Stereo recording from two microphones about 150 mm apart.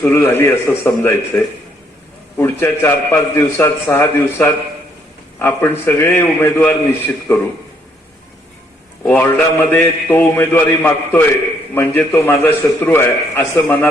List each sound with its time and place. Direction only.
0.0 s a man's voice: 15° left (ahead or behind)
2.4 s a man's voice: 15° left (ahead or behind)
9.0 s a man's voice: 15° left (ahead or behind)